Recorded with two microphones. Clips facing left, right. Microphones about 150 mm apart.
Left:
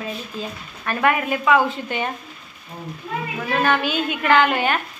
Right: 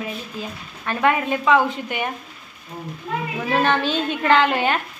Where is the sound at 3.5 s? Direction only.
25° right (ahead or behind).